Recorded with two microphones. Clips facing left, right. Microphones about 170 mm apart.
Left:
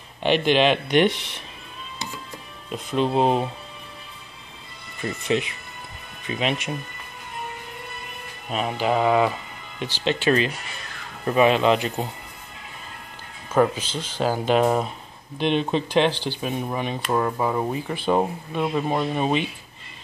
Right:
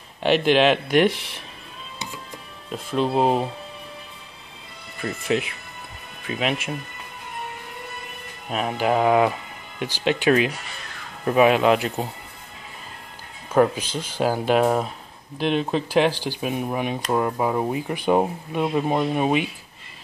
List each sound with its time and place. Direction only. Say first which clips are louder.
0.2 s speech: right 1 dB; 5° right (ahead or behind)
2.7 s speech: even; centre (ahead or behind)
5.0 s speech: even; centre (ahead or behind)
8.5 s speech: right 1 dB; 5° right (ahead or behind)
13.5 s speech: right 1 dB; 10° right (ahead or behind)